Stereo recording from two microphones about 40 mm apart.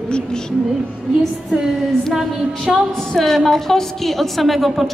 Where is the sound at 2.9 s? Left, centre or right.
Centre.